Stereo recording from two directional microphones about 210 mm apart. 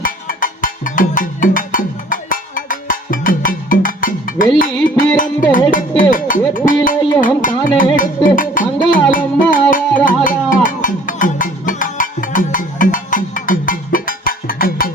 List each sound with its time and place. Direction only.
0.0 s music: 40° left (ahead or behind)
6.0 s a sound: 40° left (ahead or behind)
7.2 s music: 40° left (ahead or behind)